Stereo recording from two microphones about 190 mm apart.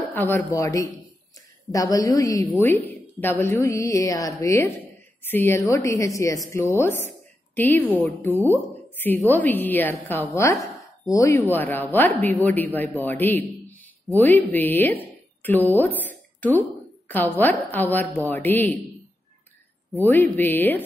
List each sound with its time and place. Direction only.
0.1 s a man's voice: 10° left (ahead or behind)
20.0 s speech: 10° left (ahead or behind)